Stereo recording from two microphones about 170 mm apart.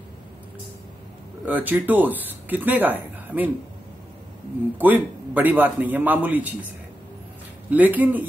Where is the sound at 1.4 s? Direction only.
10° right (ahead or behind).